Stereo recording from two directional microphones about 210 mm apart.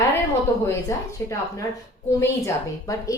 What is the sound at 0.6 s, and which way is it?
A woman's voice, 15° left (ahead or behind).